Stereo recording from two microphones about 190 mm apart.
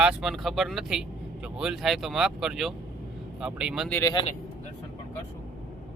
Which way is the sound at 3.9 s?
15° left (ahead or behind).